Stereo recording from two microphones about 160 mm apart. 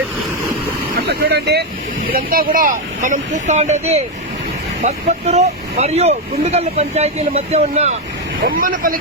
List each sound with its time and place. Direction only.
0.9 s speech: 90° right
2.1 s speech: 65° right (ahead or behind); by 7.9 s 40° right (ahead or behind)
8.5 s speech: 60° right (ahead or behind)